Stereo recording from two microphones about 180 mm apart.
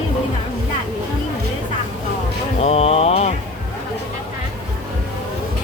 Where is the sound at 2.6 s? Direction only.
35° left (ahead or behind).